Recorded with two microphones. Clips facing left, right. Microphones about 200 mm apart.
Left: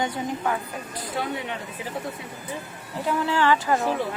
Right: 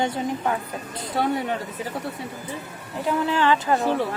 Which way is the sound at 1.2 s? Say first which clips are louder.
Right 6 dB; 40° right (ahead or behind).